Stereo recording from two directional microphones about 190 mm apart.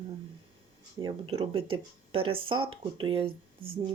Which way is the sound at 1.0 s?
30° right (ahead or behind).